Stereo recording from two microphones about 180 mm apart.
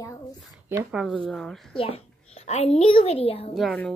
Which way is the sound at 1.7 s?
30° left (ahead or behind).